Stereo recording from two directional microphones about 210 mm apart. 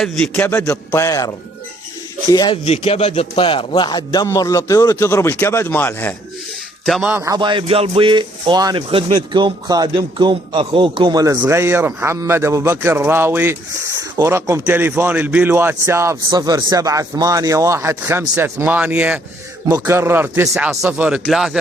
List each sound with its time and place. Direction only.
0.0 s a man's voice: 5° left (ahead or behind)
6.8 s speech: centre (ahead or behind)